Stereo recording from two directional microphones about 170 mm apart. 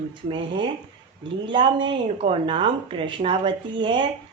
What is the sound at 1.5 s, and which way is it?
Speech, 30° right (ahead or behind).